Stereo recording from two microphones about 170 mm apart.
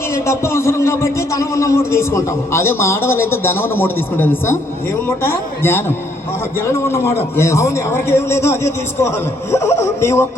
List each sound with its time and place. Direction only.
0.1 s a man's voice: 15° left (ahead or behind)